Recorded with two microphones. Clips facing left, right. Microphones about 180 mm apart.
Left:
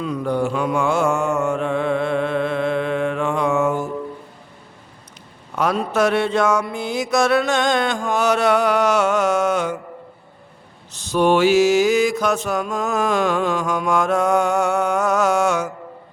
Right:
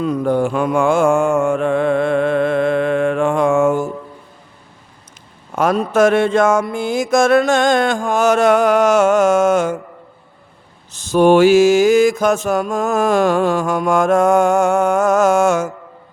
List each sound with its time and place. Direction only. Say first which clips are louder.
0.0 s mantra: right 5 dB; 50° right (ahead or behind)
5.5 s mantra: right 5 dB; 50° right (ahead or behind)
10.9 s mantra: right 6 dB; 50° right (ahead or behind)